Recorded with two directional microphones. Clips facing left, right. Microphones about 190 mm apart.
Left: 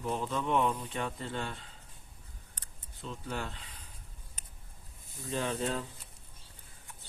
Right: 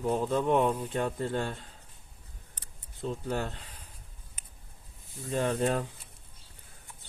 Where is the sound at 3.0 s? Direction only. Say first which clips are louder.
Right 6 dB; 45° right (ahead or behind).